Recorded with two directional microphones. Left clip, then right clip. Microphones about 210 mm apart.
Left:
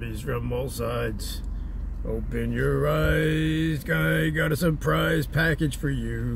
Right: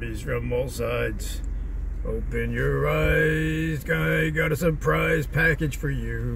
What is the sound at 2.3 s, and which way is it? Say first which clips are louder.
Speech: even; 15° left (ahead or behind).